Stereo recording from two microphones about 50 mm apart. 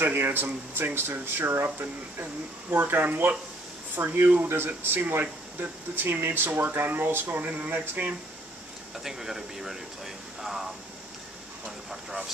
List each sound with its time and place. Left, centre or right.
0.0 s speech: right
7.4 s speech: right
8.9 s speech: centre